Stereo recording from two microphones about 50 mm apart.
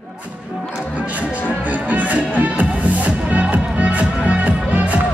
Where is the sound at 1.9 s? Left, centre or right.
Right.